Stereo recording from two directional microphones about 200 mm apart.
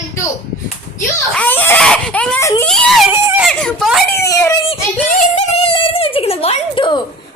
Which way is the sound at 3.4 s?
5° left (ahead or behind).